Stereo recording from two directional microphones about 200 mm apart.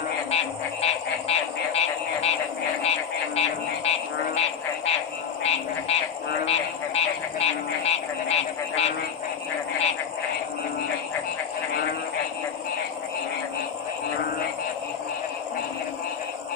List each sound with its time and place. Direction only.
0.3 s a sound: 30° left (ahead or behind)
2.8 s frog: 30° left (ahead or behind)
5.4 s speech: 30° left (ahead or behind)